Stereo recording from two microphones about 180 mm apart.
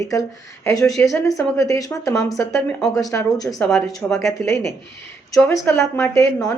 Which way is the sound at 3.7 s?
Centre (ahead or behind).